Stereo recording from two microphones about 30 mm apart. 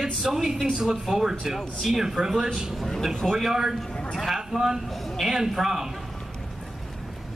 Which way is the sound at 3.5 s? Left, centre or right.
Centre.